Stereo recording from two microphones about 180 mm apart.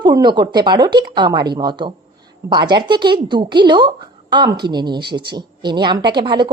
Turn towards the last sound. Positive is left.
turn(degrees=-25)  # may be behind; listen again after turning